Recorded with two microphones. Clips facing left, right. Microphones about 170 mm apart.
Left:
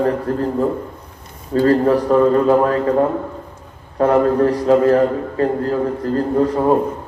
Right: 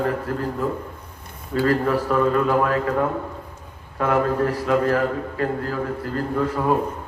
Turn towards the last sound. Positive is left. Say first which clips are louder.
# left 6 dB
turn(degrees=30)  # may be behind; listen again after turning